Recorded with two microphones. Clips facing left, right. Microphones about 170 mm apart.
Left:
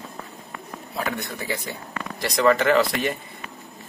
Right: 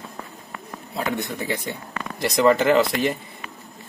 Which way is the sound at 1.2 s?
20° right (ahead or behind).